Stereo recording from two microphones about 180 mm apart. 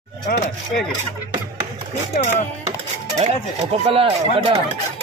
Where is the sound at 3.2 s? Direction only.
35° right (ahead or behind).